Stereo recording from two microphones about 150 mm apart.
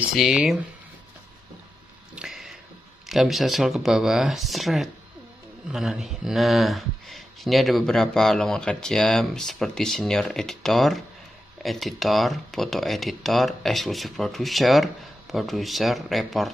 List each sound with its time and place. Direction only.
0.1 s speech: 5° right (ahead or behind)
2.1 s a sound: 5° right (ahead or behind)
3.1 s speech: centre (ahead or behind)